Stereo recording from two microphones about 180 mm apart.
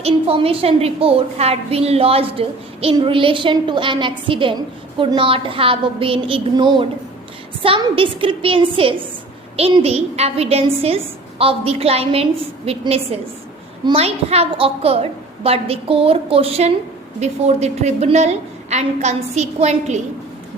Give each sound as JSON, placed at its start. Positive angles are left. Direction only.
{"t": 0.0, "sound": "a woman's voice", "side_deg": -30}